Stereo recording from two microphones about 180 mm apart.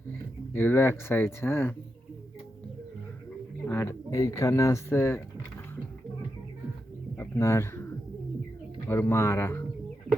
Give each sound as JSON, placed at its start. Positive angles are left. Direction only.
{"t": 0.5, "sound": "speech", "side_deg": 10}
{"t": 3.7, "sound": "speech", "side_deg": 15}
{"t": 7.2, "sound": "pigeon", "side_deg": 15}
{"t": 8.9, "sound": "speech", "side_deg": 15}